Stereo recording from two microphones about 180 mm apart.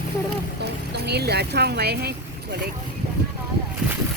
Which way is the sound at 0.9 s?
65° right (ahead or behind).